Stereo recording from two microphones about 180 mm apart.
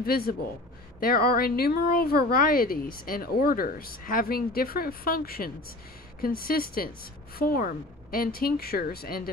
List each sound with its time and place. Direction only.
0.0 s speech: 55° left (ahead or behind)